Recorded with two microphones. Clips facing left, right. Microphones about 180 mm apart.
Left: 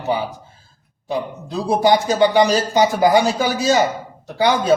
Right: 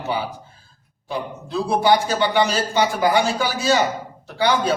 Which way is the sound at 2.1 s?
40° left (ahead or behind).